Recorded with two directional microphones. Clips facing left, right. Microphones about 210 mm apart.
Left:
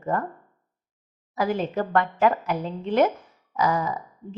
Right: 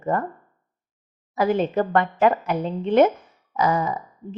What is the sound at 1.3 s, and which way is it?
A woman's voice, 25° right (ahead or behind).